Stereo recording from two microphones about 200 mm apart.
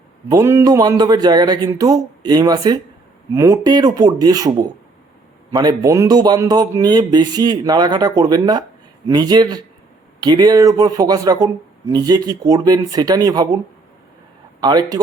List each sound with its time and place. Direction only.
0.3 s speech: 15° right (ahead or behind)
14.6 s speech: 20° right (ahead or behind)